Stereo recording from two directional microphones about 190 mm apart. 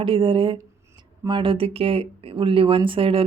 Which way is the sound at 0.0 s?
25° right (ahead or behind).